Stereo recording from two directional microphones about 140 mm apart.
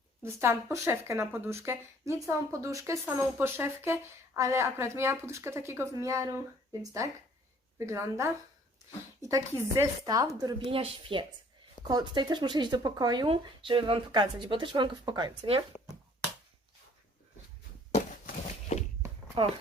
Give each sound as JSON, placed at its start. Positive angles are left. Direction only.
{"t": 0.2, "sound": "speech", "side_deg": -20}
{"t": 10.7, "sound": "speech", "side_deg": -40}
{"t": 15.7, "sound": "bouncing", "side_deg": 0}
{"t": 19.4, "sound": "speech", "side_deg": -35}